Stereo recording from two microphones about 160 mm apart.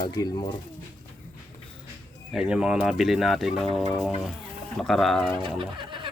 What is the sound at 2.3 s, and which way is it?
Speech, 5° right (ahead or behind).